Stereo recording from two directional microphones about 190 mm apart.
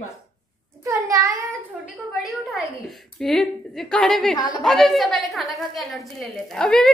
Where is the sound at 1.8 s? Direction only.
Centre (ahead or behind).